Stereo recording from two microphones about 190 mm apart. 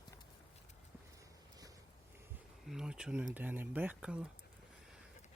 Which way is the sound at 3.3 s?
10° right (ahead or behind).